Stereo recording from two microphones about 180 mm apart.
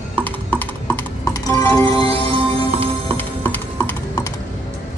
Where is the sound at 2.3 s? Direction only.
30° right (ahead or behind).